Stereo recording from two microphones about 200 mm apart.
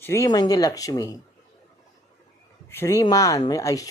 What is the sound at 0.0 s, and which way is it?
Speech, 15° left (ahead or behind).